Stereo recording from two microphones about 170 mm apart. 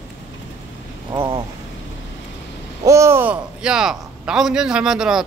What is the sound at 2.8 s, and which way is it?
Speech, 15° right (ahead or behind).